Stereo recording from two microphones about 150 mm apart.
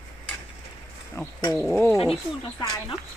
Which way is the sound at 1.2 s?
20° left (ahead or behind).